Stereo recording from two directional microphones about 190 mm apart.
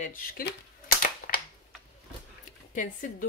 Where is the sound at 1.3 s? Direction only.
50° left (ahead or behind).